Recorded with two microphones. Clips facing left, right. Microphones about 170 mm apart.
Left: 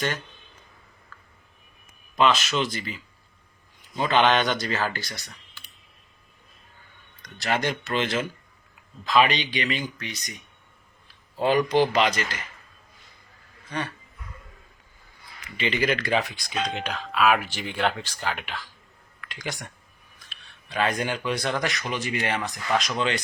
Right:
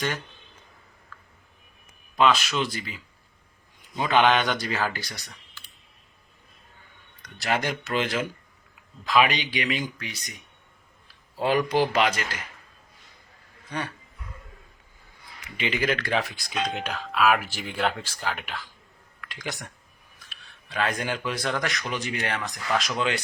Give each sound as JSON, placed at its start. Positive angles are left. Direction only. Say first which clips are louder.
{"t": 2.1, "sound": "speech", "louder": "even", "side_deg": -5}
{"t": 4.1, "sound": "speech", "louder": "even", "side_deg": -5}
{"t": 7.3, "sound": "speech", "louder": "left 1 dB", "side_deg": -10}
{"t": 11.3, "sound": "speech", "louder": "left 2 dB", "side_deg": -5}
{"t": 15.7, "sound": "speech", "louder": "left 2 dB", "side_deg": 0}